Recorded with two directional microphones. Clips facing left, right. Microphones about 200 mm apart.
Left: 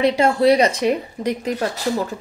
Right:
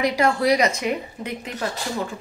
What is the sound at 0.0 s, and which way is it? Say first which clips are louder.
Speech: left 5 dB; 25° left (ahead or behind).